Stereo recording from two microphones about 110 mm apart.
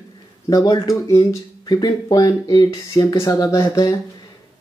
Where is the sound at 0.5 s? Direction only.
35° left (ahead or behind).